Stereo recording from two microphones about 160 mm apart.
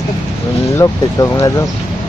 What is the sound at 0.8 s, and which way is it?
Speech, 15° left (ahead or behind).